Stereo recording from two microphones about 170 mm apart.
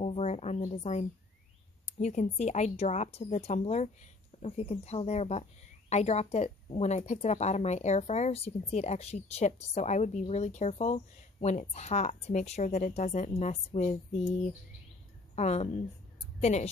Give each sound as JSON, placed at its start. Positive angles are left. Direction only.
{"t": 0.0, "sound": "a woman's voice", "side_deg": 40}